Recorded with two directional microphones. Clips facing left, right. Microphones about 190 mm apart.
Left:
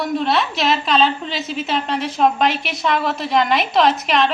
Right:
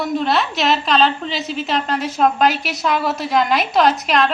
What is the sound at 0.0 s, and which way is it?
A woman's voice, centre (ahead or behind).